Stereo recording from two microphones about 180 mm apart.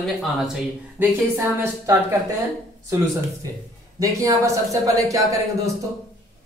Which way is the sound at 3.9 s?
20° right (ahead or behind).